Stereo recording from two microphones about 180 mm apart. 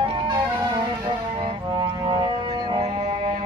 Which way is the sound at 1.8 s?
25° right (ahead or behind).